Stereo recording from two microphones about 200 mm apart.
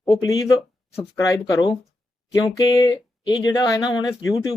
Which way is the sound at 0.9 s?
15° left (ahead or behind).